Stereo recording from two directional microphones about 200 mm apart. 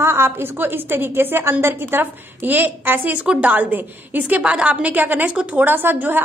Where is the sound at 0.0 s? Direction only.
10° right (ahead or behind).